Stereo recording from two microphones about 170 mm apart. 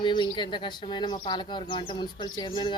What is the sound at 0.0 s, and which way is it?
Speech, 25° left (ahead or behind).